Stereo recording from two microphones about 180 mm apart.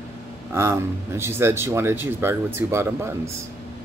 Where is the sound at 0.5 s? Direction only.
15° right (ahead or behind).